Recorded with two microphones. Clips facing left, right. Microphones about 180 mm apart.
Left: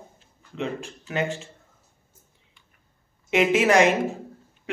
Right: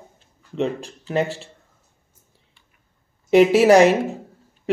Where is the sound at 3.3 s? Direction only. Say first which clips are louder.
Right 7 dB; 35° right (ahead or behind).